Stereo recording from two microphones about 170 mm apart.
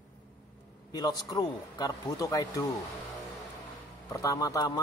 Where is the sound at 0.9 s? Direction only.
25° left (ahead or behind).